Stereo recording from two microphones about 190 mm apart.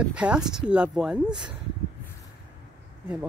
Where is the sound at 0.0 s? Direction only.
5° right (ahead or behind).